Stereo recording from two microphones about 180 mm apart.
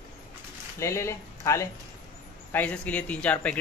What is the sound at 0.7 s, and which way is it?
Speech, 15° left (ahead or behind).